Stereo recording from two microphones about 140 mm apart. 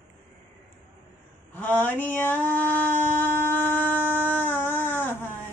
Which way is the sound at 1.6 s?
10° left (ahead or behind).